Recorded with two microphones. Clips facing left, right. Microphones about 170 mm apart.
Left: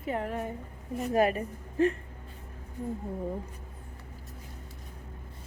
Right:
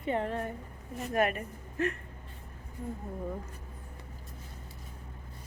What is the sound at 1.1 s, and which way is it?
Speech, 30° left (ahead or behind).